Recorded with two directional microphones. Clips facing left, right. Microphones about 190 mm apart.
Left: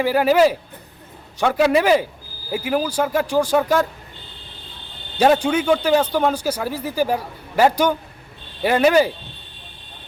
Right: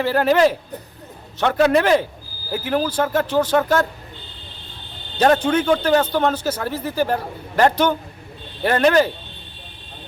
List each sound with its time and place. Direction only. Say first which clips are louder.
0.0 s a man's voice: left 1 dB; 10° left (ahead or behind)
5.1 s a man's voice: even; 10° left (ahead or behind)